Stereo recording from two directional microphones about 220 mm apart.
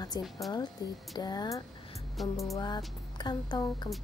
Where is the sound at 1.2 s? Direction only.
20° left (ahead or behind).